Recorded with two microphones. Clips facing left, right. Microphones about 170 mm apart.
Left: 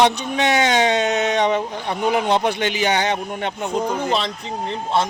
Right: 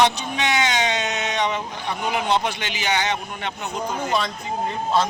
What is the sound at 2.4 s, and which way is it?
Speech, 50° left (ahead or behind).